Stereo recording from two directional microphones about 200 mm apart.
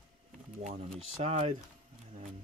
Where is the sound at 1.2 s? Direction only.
35° right (ahead or behind).